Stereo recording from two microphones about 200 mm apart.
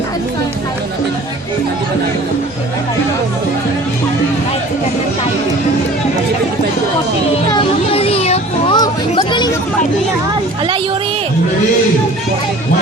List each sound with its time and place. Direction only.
7.5 s children playing: 30° left (ahead or behind)
8.8 s music: 20° left (ahead or behind)